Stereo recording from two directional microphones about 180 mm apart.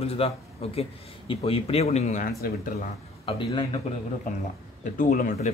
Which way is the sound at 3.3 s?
25° left (ahead or behind).